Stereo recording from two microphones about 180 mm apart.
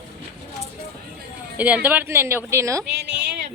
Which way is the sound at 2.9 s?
70° right (ahead or behind).